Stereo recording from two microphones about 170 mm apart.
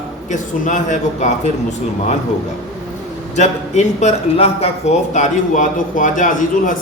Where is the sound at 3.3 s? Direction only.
40° left (ahead or behind).